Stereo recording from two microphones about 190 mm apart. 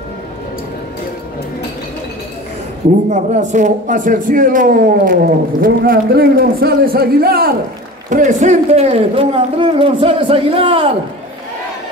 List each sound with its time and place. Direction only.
3.1 s a man's voice: 40° right (ahead or behind)
8.1 s a man's voice: 40° right (ahead or behind)